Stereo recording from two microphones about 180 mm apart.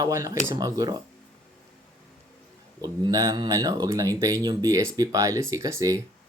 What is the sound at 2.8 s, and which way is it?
Speech, 20° right (ahead or behind).